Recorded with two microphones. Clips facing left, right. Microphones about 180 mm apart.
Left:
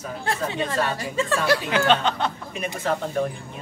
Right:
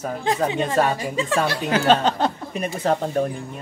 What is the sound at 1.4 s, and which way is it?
Speech, 40° right (ahead or behind).